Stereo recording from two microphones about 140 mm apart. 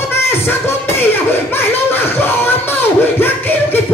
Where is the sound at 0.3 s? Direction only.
15° left (ahead or behind).